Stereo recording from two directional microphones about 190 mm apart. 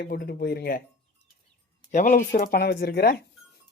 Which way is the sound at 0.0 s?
55° left (ahead or behind).